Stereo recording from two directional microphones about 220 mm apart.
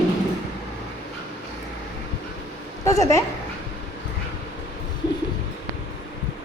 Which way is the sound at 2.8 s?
15° left (ahead or behind).